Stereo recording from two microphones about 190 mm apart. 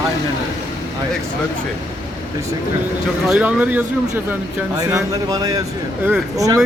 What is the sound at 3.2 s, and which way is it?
A man's voice, 5° right (ahead or behind).